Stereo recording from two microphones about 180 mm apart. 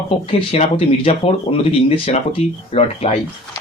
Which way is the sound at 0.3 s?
30° left (ahead or behind).